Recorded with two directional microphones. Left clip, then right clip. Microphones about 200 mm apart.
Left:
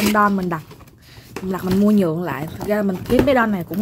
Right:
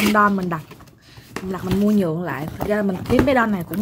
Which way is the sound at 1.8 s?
10° left (ahead or behind).